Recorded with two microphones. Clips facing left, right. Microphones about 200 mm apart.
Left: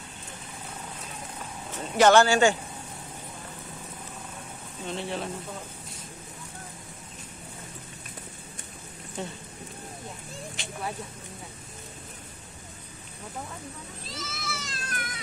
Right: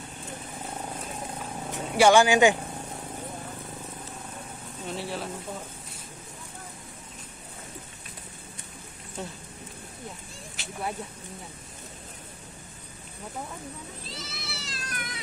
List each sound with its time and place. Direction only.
1.7 s speech: 10° right (ahead or behind)
4.8 s speech: 5° right (ahead or behind)
9.2 s speech: centre (ahead or behind)
10.6 s a sound: 5° right (ahead or behind)
14.1 s cat: 45° left (ahead or behind)